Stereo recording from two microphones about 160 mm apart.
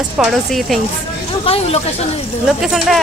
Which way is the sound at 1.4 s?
40° left (ahead or behind).